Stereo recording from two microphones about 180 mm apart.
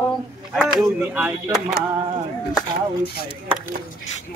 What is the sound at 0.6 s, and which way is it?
Speech, 5° right (ahead or behind).